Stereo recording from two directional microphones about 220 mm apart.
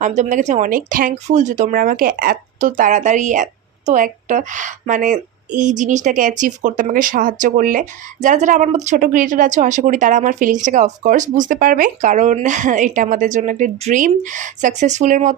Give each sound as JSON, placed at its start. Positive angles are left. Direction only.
{"t": 0.0, "sound": "speech", "side_deg": -30}